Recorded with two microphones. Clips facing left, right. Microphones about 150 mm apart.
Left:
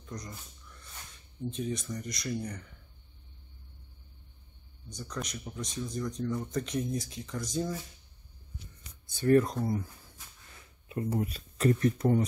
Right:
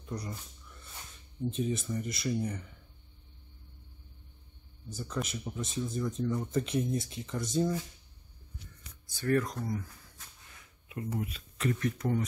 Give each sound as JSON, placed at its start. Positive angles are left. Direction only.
{"t": 0.0, "sound": "a sound", "side_deg": -10}
{"t": 1.5, "sound": "speech", "side_deg": -5}
{"t": 4.8, "sound": "speech", "side_deg": -5}
{"t": 9.0, "sound": "speech", "side_deg": 25}
{"t": 10.9, "sound": "speech", "side_deg": 35}